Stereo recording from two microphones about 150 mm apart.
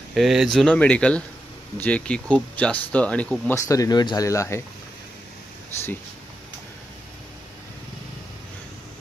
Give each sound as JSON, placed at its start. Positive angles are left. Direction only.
{"t": 0.1, "sound": "speech", "side_deg": 0}
{"t": 3.5, "sound": "speech", "side_deg": 20}